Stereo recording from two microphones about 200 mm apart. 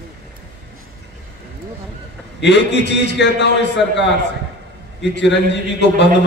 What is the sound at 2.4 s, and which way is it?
A man's voice, 60° left (ahead or behind).